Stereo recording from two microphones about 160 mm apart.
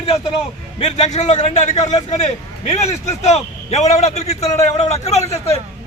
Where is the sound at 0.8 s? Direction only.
45° left (ahead or behind).